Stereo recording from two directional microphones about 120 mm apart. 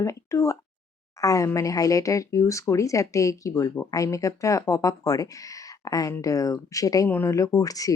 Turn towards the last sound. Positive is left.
turn(degrees=30)  # may be behind; listen again after turning